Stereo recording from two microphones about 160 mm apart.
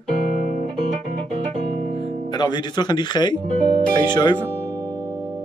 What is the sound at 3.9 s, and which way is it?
Speech, 25° left (ahead or behind).